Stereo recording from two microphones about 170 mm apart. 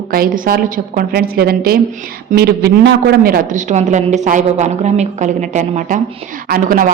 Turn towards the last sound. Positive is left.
turn(degrees=-55)  # may be behind; listen again after turning